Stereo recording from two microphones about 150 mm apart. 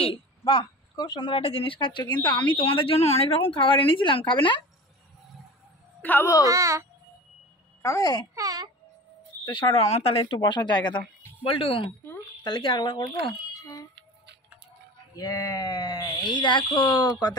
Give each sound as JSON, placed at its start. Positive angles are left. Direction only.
{"t": 0.4, "sound": "a woman's voice", "side_deg": 30}
{"t": 6.0, "sound": "speech", "side_deg": 15}
{"t": 6.4, "sound": "a child's voice", "side_deg": -20}
{"t": 7.8, "sound": "speech", "side_deg": 20}
{"t": 8.4, "sound": "speech", "side_deg": -25}
{"t": 9.4, "sound": "speech", "side_deg": 30}
{"t": 9.8, "sound": "a woman's voice", "side_deg": 45}
{"t": 13.5, "sound": "a sound", "side_deg": 25}
{"t": 15.1, "sound": "speech", "side_deg": 25}